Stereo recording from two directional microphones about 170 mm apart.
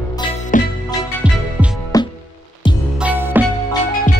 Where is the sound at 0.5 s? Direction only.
50° left (ahead or behind).